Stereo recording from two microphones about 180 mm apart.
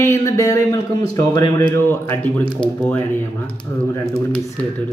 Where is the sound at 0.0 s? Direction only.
15° left (ahead or behind).